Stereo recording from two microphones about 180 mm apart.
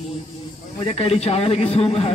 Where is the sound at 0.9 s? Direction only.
35° left (ahead or behind).